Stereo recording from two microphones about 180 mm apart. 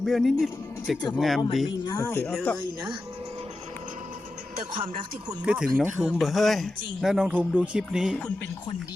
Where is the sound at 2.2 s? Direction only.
5° left (ahead or behind).